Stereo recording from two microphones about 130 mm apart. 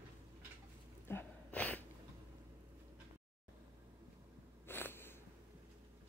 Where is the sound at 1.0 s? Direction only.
15° left (ahead or behind).